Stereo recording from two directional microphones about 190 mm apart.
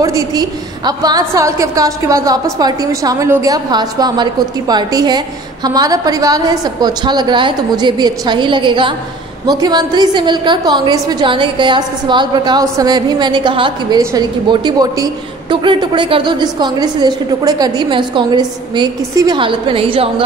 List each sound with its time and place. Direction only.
0.0 s a woman's voice: 20° right (ahead or behind)